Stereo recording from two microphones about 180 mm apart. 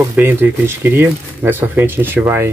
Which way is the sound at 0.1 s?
10° right (ahead or behind).